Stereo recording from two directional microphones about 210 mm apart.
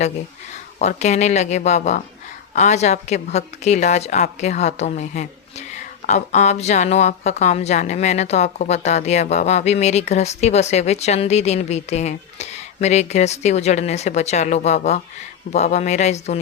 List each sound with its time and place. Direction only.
0.8 s a woman's voice: 35° left (ahead or behind)